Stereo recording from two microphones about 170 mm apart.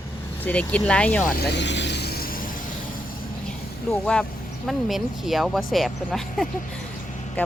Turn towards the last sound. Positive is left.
turn(degrees=0)  # may be behind; listen again after turning